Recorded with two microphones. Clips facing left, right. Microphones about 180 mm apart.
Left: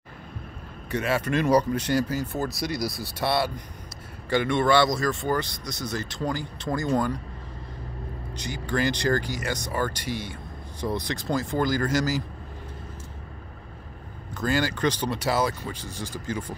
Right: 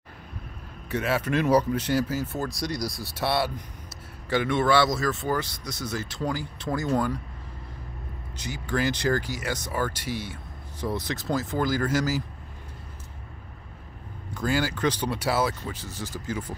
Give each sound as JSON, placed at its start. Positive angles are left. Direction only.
{"t": 0.8, "sound": "speech", "side_deg": -5}
{"t": 8.4, "sound": "speech", "side_deg": -5}
{"t": 14.3, "sound": "speech", "side_deg": -10}